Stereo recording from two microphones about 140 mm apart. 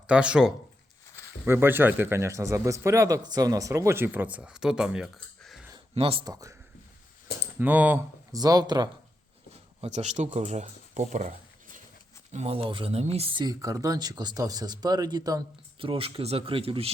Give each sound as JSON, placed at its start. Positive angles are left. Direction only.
{"t": 0.1, "sound": "speech", "side_deg": -10}
{"t": 5.9, "sound": "speech", "side_deg": -45}
{"t": 6.2, "sound": "speech", "side_deg": -25}
{"t": 7.6, "sound": "speech", "side_deg": -10}
{"t": 8.3, "sound": "speech", "side_deg": -25}
{"t": 9.5, "sound": "a sound", "side_deg": -50}
{"t": 10.3, "sound": "speech", "side_deg": -50}
{"t": 13.4, "sound": "speech", "side_deg": -25}
{"t": 15.8, "sound": "speech", "side_deg": -40}